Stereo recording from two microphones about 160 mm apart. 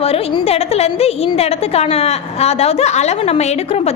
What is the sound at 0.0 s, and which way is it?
A woman's voice, 40° left (ahead or behind).